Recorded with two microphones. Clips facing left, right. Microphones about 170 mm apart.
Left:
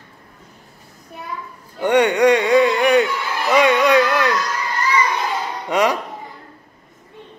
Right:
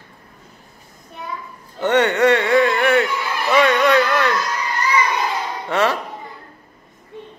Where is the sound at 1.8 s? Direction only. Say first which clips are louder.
Left 1 dB; 15° left (ahead or behind).